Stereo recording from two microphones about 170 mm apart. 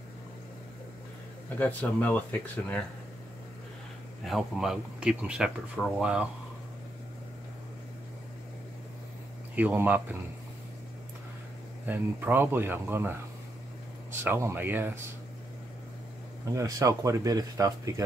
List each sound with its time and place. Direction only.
1.6 s speech: 10° left (ahead or behind)
4.2 s speech: centre (ahead or behind)
9.6 s speech: 10° right (ahead or behind)
11.8 s speech: 10° right (ahead or behind)
14.2 s speech: 15° right (ahead or behind)
16.5 s speech: 20° right (ahead or behind)